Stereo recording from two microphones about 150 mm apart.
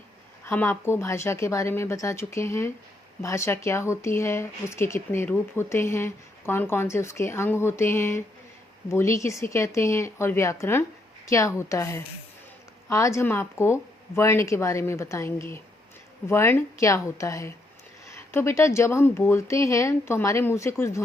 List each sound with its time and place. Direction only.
0.4 s speech: 15° left (ahead or behind)